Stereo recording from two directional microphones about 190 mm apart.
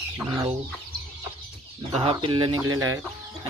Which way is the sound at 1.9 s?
30° right (ahead or behind).